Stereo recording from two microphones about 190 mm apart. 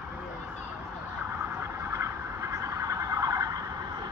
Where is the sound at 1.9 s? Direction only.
15° right (ahead or behind).